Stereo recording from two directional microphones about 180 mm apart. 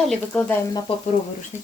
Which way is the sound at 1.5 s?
40° left (ahead or behind).